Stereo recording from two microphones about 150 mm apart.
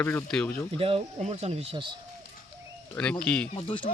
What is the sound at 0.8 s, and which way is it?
Speech, 40° right (ahead or behind).